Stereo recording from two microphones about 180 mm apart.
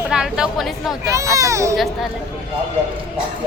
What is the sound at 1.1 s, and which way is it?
Speech, 15° right (ahead or behind).